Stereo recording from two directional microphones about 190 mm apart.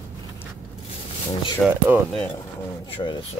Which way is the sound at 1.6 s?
Centre (ahead or behind).